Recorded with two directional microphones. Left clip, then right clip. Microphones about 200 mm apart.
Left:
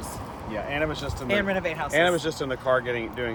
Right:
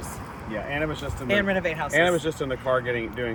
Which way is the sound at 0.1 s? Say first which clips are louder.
Right 1 dB; 50° left (ahead or behind).